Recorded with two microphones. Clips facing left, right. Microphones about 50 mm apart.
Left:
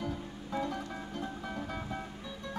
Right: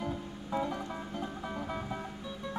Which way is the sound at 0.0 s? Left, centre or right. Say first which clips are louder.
Right 1 dB; centre.